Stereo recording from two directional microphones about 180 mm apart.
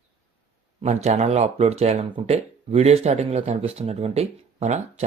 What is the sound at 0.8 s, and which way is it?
Speech, 40° right (ahead or behind).